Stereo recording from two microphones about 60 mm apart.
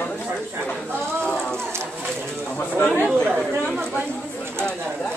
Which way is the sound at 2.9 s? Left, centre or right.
Centre.